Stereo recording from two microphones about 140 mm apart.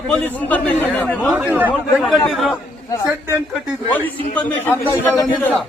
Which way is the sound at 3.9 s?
15° left (ahead or behind).